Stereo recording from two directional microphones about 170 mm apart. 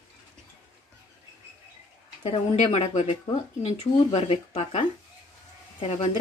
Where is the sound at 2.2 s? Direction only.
40° left (ahead or behind).